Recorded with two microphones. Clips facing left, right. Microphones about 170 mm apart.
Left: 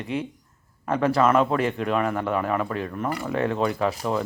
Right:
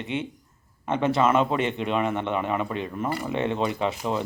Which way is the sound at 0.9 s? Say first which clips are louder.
Left 1 dB; 25° right (ahead or behind).